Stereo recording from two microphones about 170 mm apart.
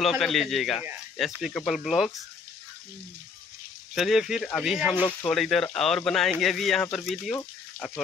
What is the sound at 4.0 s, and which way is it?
Speech, centre (ahead or behind).